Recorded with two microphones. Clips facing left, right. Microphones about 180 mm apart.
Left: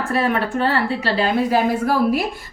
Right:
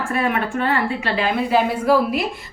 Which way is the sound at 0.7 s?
35° left (ahead or behind).